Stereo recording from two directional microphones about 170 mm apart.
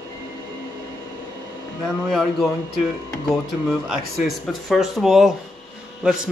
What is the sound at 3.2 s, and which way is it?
Speech, centre (ahead or behind).